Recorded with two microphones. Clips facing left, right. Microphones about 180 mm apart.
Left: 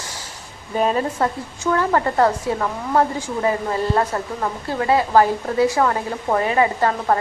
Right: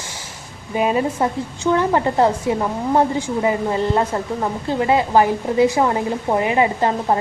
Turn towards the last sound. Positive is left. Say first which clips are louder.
# right 1 dB
turn(degrees=-20)  # may be behind; listen again after turning